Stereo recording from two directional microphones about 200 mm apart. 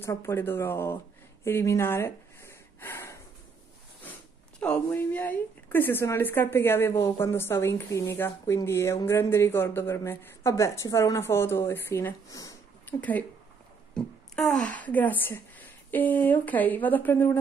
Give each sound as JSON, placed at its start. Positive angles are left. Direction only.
{"t": 0.0, "sound": "a woman's voice", "side_deg": 15}
{"t": 1.4, "sound": "gasp", "side_deg": 15}
{"t": 4.6, "sound": "a woman's voice", "side_deg": 5}